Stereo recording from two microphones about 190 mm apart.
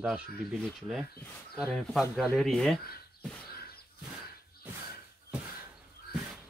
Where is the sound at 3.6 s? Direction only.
55° left (ahead or behind).